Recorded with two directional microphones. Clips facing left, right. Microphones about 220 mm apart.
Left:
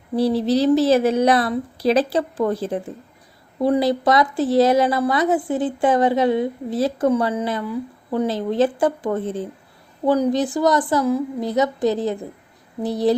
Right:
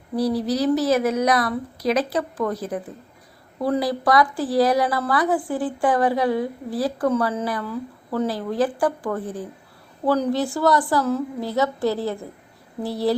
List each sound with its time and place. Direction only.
0.2 s a woman's voice: 25° left (ahead or behind)